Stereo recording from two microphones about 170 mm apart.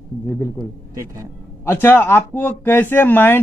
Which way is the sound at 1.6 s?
15° left (ahead or behind).